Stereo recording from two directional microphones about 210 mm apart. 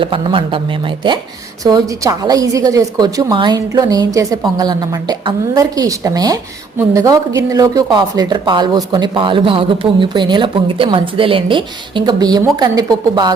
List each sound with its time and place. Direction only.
0.0 s a woman's voice: 25° right (ahead or behind)